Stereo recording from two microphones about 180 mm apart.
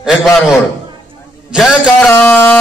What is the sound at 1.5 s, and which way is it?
Speech, 5° right (ahead or behind).